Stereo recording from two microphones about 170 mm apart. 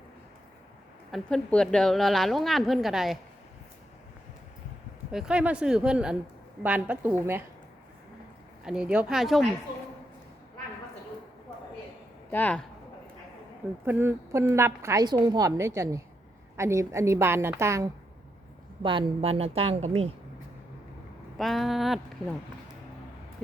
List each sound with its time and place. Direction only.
1.1 s a woman's voice: 5° left (ahead or behind)
5.1 s a woman's voice: 5° right (ahead or behind)
8.6 s a woman's voice: 5° right (ahead or behind)
12.3 s speech: 10° left (ahead or behind)
13.8 s a woman's voice: 10° right (ahead or behind)
18.8 s a woman's voice: 30° right (ahead or behind)
21.3 s a woman's voice: centre (ahead or behind)